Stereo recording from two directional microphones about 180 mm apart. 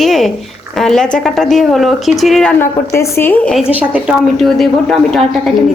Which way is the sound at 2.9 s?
10° left (ahead or behind).